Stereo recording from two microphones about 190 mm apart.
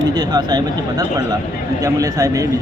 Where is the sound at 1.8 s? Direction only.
15° right (ahead or behind).